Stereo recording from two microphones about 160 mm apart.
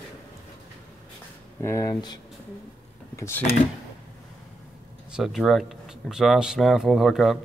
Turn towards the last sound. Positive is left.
turn(degrees=0)  # may be behind; listen again after turning